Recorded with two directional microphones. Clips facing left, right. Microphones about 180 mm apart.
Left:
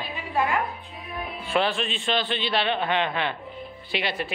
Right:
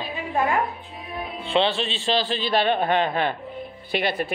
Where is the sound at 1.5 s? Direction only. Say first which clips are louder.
Right 3 dB; 30° right (ahead or behind).